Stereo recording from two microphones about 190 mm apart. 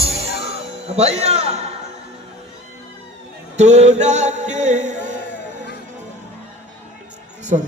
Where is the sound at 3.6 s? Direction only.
35° right (ahead or behind).